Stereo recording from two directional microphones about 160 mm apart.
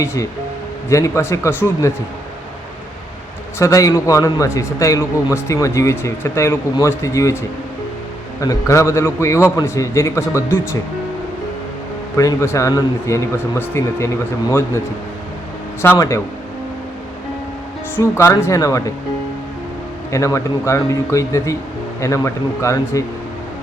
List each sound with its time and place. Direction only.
0.0 s a man's voice: 20° left (ahead or behind)
3.6 s a man's voice: 20° left (ahead or behind)
8.4 s a man's voice: 20° left (ahead or behind)
12.1 s speech: 20° left (ahead or behind)
15.8 s a man's voice: 15° left (ahead or behind)
17.9 s a man's voice: 15° left (ahead or behind)
20.1 s speech: 20° left (ahead or behind)